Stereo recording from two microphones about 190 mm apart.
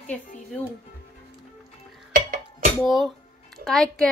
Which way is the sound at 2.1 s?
45° right (ahead or behind).